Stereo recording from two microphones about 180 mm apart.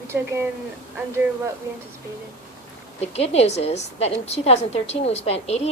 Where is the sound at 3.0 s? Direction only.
35° left (ahead or behind).